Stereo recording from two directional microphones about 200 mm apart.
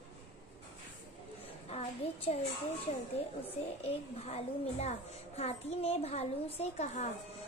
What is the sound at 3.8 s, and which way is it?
A woman's voice, 30° left (ahead or behind).